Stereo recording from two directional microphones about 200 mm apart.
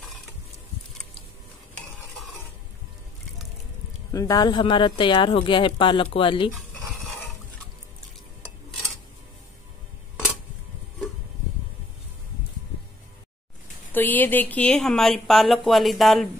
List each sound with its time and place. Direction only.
4.1 s speech: 15° left (ahead or behind)
13.9 s speech: 10° left (ahead or behind)